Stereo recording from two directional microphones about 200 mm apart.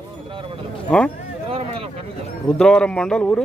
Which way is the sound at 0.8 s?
5° left (ahead or behind).